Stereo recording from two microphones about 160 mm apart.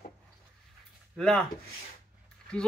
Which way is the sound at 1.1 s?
5° left (ahead or behind).